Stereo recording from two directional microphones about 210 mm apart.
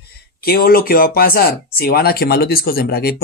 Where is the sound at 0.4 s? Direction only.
45° left (ahead or behind).